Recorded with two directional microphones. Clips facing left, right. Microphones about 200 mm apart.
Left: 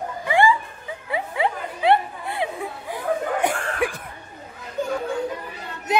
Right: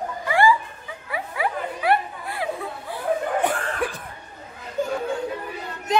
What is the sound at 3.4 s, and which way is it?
Cough, 10° left (ahead or behind).